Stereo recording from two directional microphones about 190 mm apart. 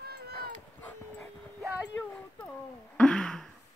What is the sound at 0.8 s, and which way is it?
Dog, 5° left (ahead or behind).